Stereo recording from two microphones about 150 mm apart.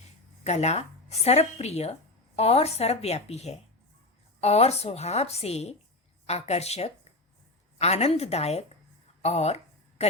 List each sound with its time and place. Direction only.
0.4 s speech: 50° left (ahead or behind)